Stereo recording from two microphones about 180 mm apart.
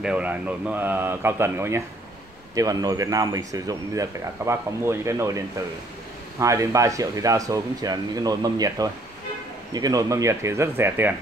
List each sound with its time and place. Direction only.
0.0 s a man's voice: 5° right (ahead or behind)
6.4 s a man's voice: 15° right (ahead or behind)